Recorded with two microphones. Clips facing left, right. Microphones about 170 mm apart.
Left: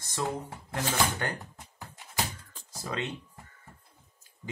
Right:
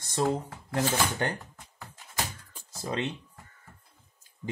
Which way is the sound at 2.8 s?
25° right (ahead or behind).